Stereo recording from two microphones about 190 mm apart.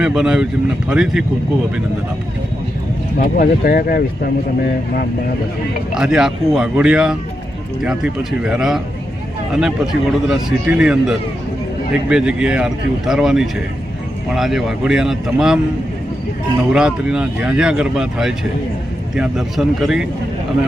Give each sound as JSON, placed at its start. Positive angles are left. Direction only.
{"t": 0.0, "sound": "speech", "side_deg": -5}
{"t": 3.2, "sound": "speech", "side_deg": 50}
{"t": 5.9, "sound": "speech", "side_deg": -5}
{"t": 16.7, "sound": "speech", "side_deg": -5}